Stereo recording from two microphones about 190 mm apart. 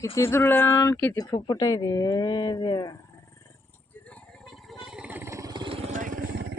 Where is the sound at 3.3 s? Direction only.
10° left (ahead or behind).